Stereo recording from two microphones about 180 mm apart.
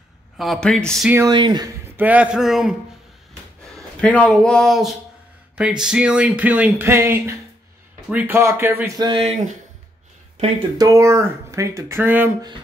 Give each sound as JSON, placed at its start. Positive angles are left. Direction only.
{"t": 0.4, "sound": "speech", "side_deg": 0}
{"t": 1.1, "sound": "speech", "side_deg": -20}
{"t": 2.0, "sound": "speech", "side_deg": -10}
{"t": 3.7, "sound": "speech", "side_deg": 5}
{"t": 8.9, "sound": "speech", "side_deg": -25}
{"t": 10.8, "sound": "speech", "side_deg": -15}